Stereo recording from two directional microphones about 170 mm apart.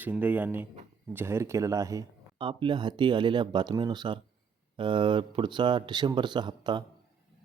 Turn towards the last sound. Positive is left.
turn(degrees=-25)  # may be behind; listen again after turning